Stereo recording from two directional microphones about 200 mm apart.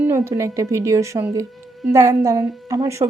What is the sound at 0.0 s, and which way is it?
A woman's voice, 15° right (ahead or behind).